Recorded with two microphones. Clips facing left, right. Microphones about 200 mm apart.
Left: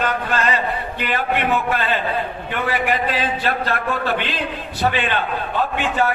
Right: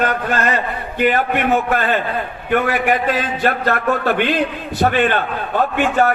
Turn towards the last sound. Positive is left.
turn(degrees=-45)  # may be behind; listen again after turning